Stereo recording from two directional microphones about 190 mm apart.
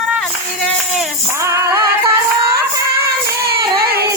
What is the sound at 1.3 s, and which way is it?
Music, 15° right (ahead or behind).